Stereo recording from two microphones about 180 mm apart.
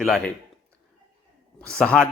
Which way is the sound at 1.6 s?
5° left (ahead or behind).